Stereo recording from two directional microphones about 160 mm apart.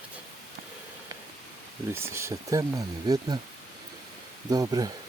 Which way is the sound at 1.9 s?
15° right (ahead or behind).